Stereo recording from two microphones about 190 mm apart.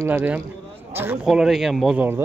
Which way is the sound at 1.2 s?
Centre (ahead or behind).